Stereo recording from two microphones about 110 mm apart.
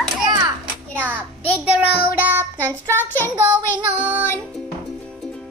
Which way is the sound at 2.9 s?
20° left (ahead or behind).